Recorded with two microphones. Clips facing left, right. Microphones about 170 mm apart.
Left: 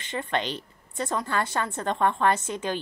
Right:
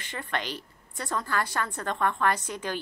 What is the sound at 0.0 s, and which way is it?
A woman's voice, 20° left (ahead or behind).